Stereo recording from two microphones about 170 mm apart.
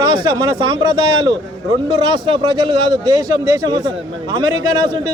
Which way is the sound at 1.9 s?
25° right (ahead or behind).